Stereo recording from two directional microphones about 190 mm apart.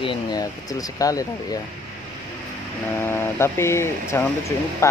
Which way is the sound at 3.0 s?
10° left (ahead or behind).